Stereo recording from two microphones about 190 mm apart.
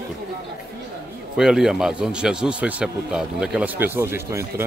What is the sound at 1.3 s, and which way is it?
A man's voice, 5° right (ahead or behind).